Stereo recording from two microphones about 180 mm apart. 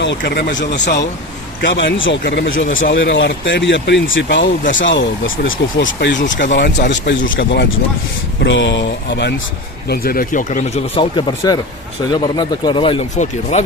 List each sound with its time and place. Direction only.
0.0 s speech: 80° left
1.6 s speech: 85° left
9.9 s speech: 55° left (ahead or behind); by 13.6 s 35° left (ahead or behind)